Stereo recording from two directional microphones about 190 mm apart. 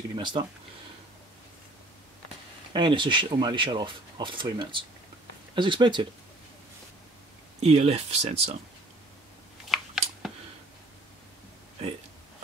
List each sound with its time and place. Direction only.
0.1 s speech: 25° right (ahead or behind)
2.7 s speech: 25° right (ahead or behind)
7.6 s speech: 35° right (ahead or behind)
9.7 s a sound: centre (ahead or behind)